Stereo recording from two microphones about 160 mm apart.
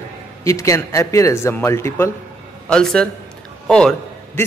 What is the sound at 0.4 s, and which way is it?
Speech, 20° left (ahead or behind).